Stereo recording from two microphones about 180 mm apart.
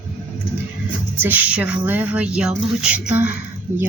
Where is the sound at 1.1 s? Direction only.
10° right (ahead or behind).